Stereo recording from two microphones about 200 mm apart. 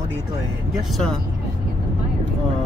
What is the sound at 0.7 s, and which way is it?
Speech, 5° left (ahead or behind).